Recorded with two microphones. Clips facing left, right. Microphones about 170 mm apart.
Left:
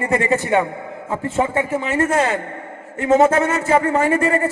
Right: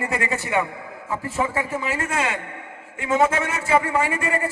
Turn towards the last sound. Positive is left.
turn(degrees=35)  # may be behind; listen again after turning